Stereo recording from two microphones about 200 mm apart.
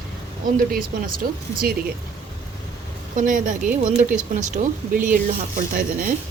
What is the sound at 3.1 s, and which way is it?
Speech, 40° right (ahead or behind).